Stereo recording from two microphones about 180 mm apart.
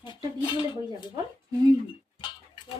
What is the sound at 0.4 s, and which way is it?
Speech, 25° left (ahead or behind).